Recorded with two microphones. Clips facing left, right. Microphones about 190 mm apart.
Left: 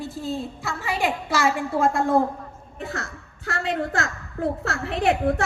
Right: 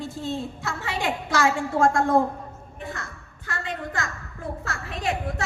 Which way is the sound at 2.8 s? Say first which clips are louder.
Left 4 dB; 75° left (ahead or behind).